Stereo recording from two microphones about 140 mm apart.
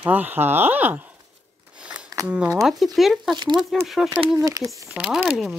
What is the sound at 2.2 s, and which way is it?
Speech, 10° right (ahead or behind).